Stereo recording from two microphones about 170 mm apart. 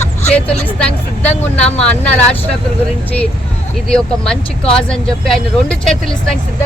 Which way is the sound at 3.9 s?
5° left (ahead or behind).